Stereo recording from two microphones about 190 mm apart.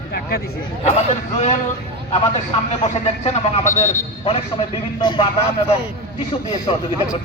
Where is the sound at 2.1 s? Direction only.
35° left (ahead or behind).